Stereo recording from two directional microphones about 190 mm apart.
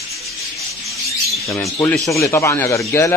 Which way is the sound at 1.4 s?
15° left (ahead or behind).